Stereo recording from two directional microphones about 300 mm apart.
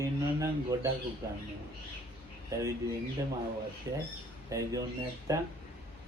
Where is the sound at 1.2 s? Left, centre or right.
Centre.